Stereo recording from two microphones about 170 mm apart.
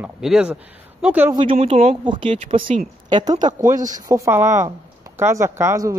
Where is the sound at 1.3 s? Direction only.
30° right (ahead or behind).